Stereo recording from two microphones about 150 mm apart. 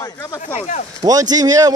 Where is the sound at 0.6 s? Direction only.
55° left (ahead or behind).